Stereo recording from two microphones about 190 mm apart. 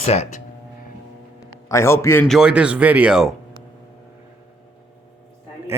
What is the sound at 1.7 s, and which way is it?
Speech, 15° left (ahead or behind).